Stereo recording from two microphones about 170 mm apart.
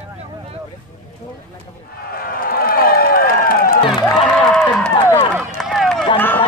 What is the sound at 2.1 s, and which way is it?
Run, 60° left (ahead or behind).